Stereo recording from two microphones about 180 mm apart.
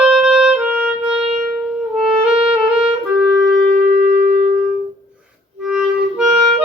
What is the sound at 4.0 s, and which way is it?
Shofar, 50° right (ahead or behind).